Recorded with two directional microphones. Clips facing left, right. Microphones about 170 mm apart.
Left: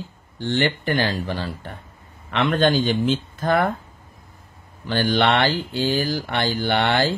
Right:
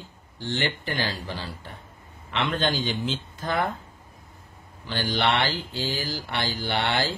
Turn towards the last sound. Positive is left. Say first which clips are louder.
# left 6 dB
turn(degrees=55)  # may be behind; listen again after turning